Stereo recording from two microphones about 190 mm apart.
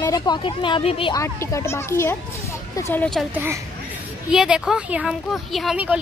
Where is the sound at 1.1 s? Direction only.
15° left (ahead or behind).